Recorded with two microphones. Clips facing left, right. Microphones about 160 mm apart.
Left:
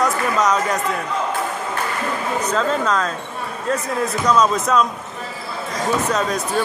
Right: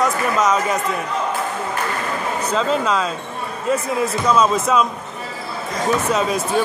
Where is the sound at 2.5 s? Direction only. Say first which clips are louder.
Right 1 dB; 5° right (ahead or behind).